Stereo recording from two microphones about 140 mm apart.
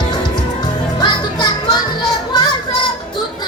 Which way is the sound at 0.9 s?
30° left (ahead or behind).